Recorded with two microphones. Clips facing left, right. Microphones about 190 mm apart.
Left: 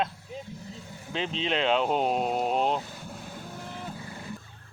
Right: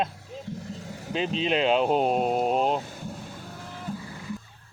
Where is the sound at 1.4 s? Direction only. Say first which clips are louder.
Right 3 dB; 10° right (ahead or behind).